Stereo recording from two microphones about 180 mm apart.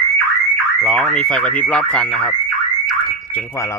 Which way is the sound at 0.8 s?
Centre (ahead or behind).